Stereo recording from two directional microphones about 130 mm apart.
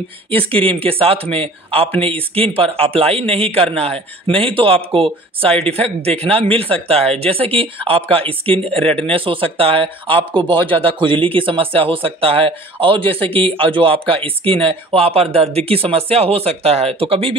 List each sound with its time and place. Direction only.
0.7 s speech: 45° right (ahead or behind)